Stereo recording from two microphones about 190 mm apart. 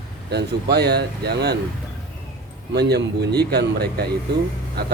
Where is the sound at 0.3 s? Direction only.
60° right (ahead or behind).